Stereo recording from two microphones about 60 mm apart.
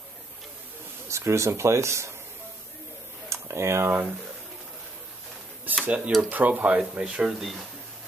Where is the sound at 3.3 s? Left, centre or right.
Right.